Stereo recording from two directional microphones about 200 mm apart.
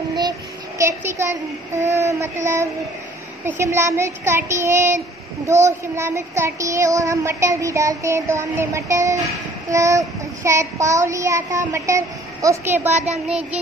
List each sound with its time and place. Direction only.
0.7 s child singing: 15° right (ahead or behind)
12.9 s child singing: 35° right (ahead or behind)
13.3 s child singing: 5° right (ahead or behind)